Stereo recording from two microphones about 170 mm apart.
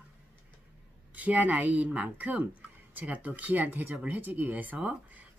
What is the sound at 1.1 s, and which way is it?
Speech, 10° right (ahead or behind).